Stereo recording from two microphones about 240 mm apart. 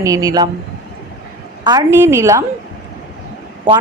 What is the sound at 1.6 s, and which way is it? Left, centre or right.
Speech, centre.